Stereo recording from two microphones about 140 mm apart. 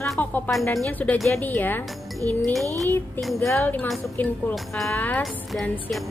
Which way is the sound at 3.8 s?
Centre (ahead or behind).